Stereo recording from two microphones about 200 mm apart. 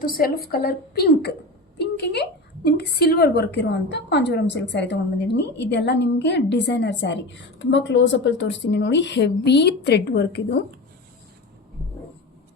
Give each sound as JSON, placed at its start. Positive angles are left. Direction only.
{"t": 0.0, "sound": "a woman's voice", "side_deg": 45}
{"t": 1.8, "sound": "a sound", "side_deg": 55}
{"t": 2.6, "sound": "a woman's voice", "side_deg": 55}